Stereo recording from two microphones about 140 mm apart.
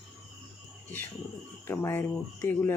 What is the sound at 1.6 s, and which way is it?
Speech, 15° left (ahead or behind).